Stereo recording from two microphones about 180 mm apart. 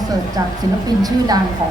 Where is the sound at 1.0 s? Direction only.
20° right (ahead or behind).